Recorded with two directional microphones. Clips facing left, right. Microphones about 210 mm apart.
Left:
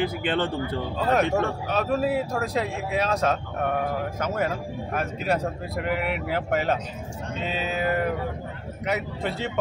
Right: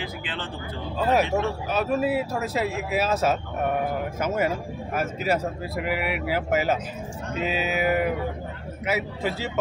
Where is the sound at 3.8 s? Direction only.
5° right (ahead or behind).